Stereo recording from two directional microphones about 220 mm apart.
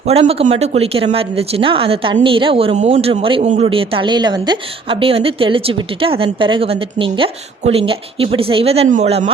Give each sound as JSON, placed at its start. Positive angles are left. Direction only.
{"t": 0.0, "sound": "speech", "side_deg": -25}